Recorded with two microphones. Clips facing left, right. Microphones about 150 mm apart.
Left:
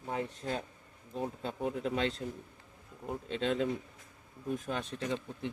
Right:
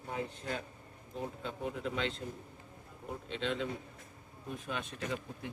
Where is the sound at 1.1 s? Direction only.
35° left (ahead or behind).